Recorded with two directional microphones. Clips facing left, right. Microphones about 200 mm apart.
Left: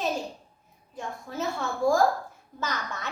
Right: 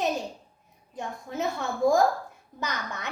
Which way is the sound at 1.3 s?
20° right (ahead or behind).